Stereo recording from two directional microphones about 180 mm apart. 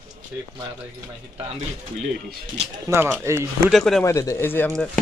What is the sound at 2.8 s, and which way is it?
Speech, 15° right (ahead or behind).